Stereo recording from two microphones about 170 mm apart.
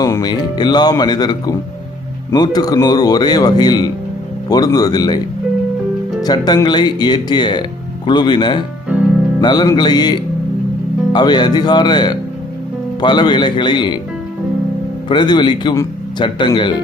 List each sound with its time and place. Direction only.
0.0 s speech: 20° left (ahead or behind)
6.2 s speech: 25° left (ahead or behind)
15.1 s speech: 25° left (ahead or behind)